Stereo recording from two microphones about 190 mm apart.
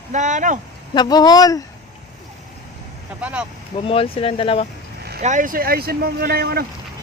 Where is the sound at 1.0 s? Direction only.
20° left (ahead or behind).